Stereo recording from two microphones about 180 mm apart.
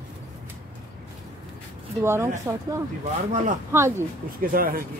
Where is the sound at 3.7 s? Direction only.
15° right (ahead or behind).